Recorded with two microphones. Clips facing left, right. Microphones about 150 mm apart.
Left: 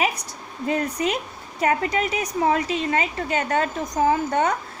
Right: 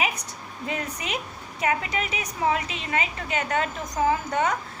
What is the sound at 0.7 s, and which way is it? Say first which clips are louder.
A woman's voice: left 8 dB; 35° left (ahead or behind).